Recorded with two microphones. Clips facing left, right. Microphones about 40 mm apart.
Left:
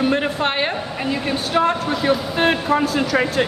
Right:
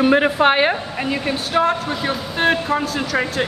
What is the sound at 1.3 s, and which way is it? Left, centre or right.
A man's voice, centre.